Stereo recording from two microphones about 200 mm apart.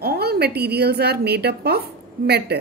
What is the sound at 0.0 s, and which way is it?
A woman's voice, 50° right (ahead or behind).